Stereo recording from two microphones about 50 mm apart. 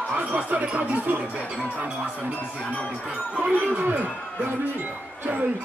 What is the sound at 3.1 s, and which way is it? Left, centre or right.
Speech, centre.